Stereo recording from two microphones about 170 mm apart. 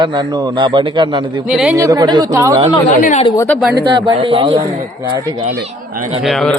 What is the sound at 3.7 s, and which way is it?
Speech, 25° right (ahead or behind).